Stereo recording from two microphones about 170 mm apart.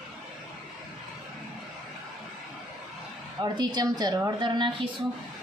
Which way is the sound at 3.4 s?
25° right (ahead or behind).